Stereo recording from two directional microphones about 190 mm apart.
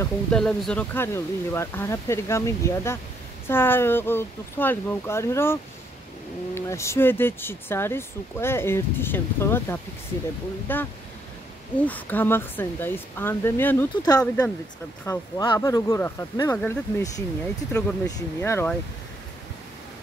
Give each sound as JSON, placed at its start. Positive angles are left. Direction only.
{"t": 0.0, "sound": "speech", "side_deg": 5}
{"t": 15.0, "sound": "speech", "side_deg": 20}